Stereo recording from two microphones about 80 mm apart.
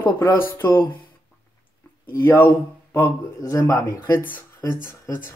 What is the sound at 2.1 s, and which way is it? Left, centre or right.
Speech, left.